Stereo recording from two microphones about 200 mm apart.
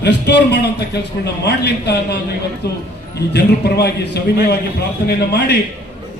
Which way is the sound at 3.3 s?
55° left (ahead or behind).